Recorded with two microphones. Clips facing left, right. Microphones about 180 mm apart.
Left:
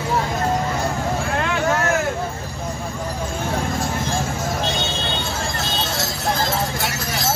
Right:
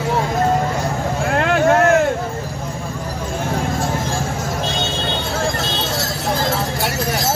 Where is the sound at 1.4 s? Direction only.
55° right (ahead or behind).